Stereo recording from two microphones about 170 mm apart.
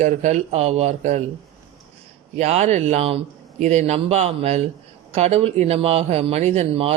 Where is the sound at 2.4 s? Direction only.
40° right (ahead or behind).